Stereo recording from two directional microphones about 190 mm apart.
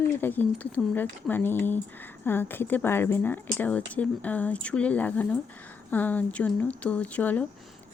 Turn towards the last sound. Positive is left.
turn(degrees=10)  # may be behind; listen again after turning